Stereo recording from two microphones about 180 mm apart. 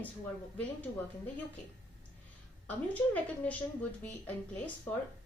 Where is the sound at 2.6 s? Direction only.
10° left (ahead or behind).